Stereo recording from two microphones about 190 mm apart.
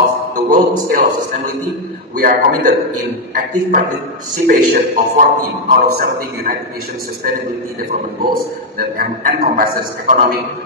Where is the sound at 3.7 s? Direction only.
45° right (ahead or behind).